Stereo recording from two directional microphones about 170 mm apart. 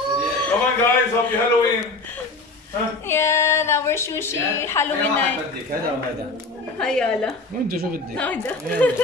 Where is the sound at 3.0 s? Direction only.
15° left (ahead or behind).